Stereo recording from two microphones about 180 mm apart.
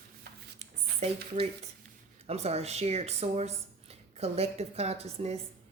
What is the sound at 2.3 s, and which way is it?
Speech, 35° right (ahead or behind).